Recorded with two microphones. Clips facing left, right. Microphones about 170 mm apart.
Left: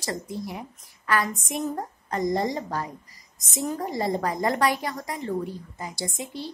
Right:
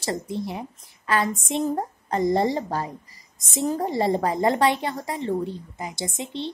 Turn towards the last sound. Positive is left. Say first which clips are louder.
# right 3 dB
turn(degrees=-25)  # may be behind; listen again after turning